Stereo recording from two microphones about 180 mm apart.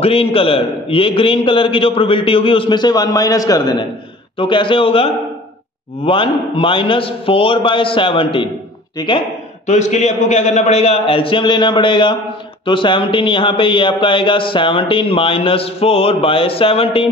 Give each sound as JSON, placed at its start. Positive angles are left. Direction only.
{"t": 0.0, "sound": "speech", "side_deg": 30}
{"t": 9.7, "sound": "a man's voice", "side_deg": 40}